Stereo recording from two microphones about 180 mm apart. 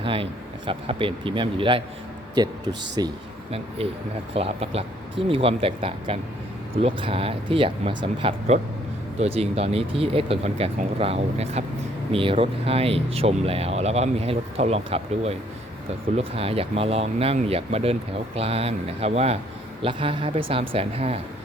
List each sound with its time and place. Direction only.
0.0 s speech: 30° right (ahead or behind)
3.0 s speech: 20° right (ahead or behind)
4.4 s speech: 35° right (ahead or behind)